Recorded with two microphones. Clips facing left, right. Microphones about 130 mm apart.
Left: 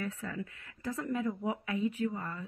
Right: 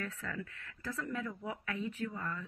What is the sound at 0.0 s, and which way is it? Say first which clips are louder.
Speech: left 4 dB; 15° left (ahead or behind).